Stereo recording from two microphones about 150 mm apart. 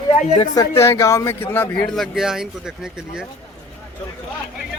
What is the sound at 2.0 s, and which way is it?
Speech, 5° right (ahead or behind).